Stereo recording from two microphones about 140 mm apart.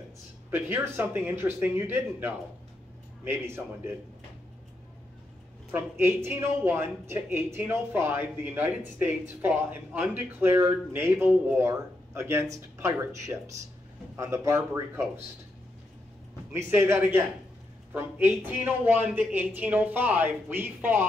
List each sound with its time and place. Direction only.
0.5 s speech: 15° right (ahead or behind)
5.7 s speech: 15° right (ahead or behind)
16.5 s speech: 15° right (ahead or behind)